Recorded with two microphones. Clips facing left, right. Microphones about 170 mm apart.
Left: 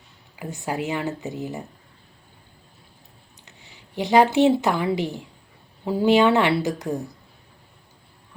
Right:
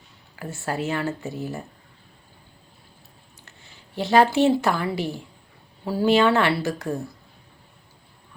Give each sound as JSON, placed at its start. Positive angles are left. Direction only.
{"t": 0.3, "sound": "speech", "side_deg": 15}
{"t": 3.4, "sound": "speech", "side_deg": 15}